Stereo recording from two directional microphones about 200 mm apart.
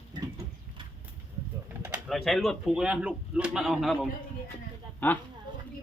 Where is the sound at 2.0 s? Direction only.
Centre (ahead or behind).